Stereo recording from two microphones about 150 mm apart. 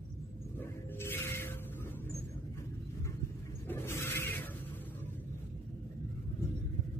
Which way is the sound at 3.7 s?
15° left (ahead or behind).